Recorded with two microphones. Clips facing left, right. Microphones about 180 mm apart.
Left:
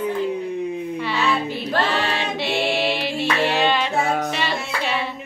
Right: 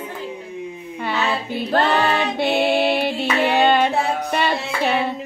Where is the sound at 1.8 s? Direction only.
55° right (ahead or behind).